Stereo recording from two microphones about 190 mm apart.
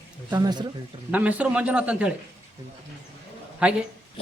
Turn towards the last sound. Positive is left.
turn(degrees=-5)  # may be behind; listen again after turning